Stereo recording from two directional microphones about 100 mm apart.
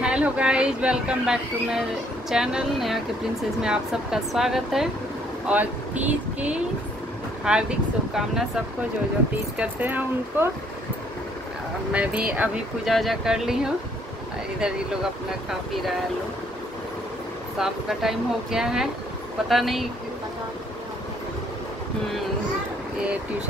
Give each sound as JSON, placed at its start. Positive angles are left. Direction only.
{"t": 0.0, "sound": "speech", "side_deg": -10}
{"t": 5.5, "sound": "speech", "side_deg": -15}
{"t": 9.6, "sound": "speech", "side_deg": -15}
{"t": 11.9, "sound": "speech", "side_deg": -10}
{"t": 12.8, "sound": "speech", "side_deg": 0}
{"t": 17.6, "sound": "speech", "side_deg": -5}